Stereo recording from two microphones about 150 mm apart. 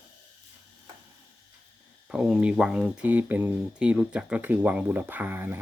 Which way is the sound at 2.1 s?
5° right (ahead or behind).